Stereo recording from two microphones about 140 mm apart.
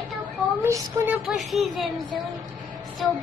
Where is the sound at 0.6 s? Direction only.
15° right (ahead or behind).